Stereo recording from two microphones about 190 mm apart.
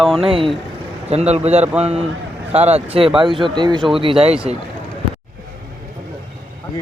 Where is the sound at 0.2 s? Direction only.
30° right (ahead or behind).